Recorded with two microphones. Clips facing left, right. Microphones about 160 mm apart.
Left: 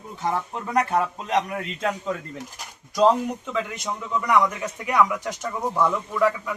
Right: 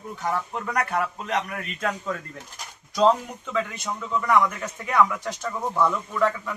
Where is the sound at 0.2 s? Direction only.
25° left (ahead or behind).